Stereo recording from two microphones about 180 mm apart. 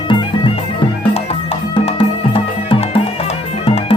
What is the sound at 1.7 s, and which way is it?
Music, 30° left (ahead or behind).